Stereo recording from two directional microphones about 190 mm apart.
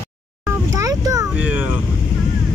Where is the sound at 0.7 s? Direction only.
20° right (ahead or behind).